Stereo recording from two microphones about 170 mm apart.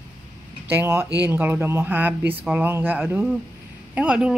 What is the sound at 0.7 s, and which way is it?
Speech, 10° right (ahead or behind).